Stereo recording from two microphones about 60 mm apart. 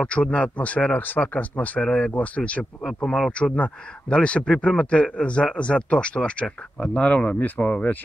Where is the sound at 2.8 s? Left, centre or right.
Centre; by 7.9 s left.